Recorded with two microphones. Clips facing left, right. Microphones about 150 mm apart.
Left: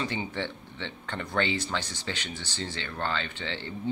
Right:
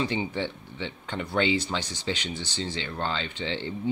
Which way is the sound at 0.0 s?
15° right (ahead or behind).